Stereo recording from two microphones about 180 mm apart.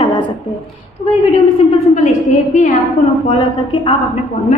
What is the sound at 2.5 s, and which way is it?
Speech, 45° left (ahead or behind).